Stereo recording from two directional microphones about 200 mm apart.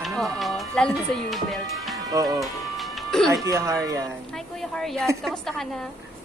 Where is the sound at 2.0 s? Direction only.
20° right (ahead or behind).